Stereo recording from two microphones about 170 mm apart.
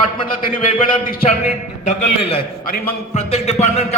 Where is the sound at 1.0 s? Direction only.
60° left (ahead or behind).